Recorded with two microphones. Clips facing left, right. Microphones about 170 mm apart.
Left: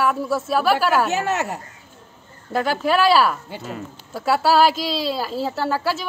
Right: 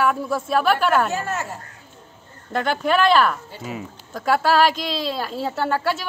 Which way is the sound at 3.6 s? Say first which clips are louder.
Even; 5° right (ahead or behind).